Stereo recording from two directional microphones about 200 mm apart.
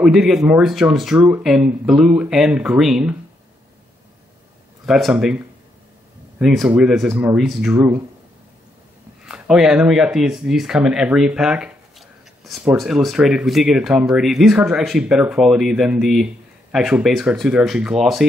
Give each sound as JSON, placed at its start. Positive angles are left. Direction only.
{"t": 0.0, "sound": "speech", "side_deg": 0}
{"t": 4.8, "sound": "speech", "side_deg": 0}
{"t": 6.4, "sound": "speech", "side_deg": 0}
{"t": 9.2, "sound": "speech", "side_deg": -5}